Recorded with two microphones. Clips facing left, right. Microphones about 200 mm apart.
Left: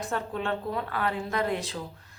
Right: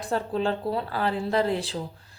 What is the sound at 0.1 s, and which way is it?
A woman's voice, 30° right (ahead or behind).